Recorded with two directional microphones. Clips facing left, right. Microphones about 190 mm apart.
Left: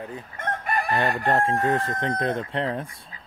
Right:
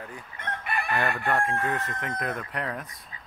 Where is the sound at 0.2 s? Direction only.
45° left (ahead or behind).